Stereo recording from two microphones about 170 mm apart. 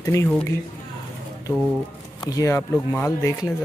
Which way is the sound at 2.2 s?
15° left (ahead or behind).